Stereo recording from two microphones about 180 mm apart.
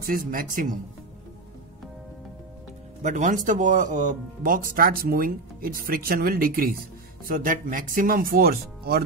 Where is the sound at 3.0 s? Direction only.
45° right (ahead or behind).